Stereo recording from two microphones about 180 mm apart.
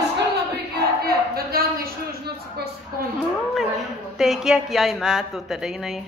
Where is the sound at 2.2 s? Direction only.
65° right (ahead or behind).